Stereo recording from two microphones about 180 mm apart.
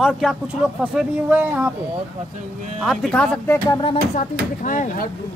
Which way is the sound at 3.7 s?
25° left (ahead or behind).